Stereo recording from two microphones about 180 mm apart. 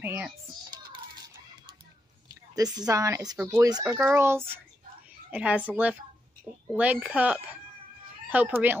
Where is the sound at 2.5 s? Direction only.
20° right (ahead or behind).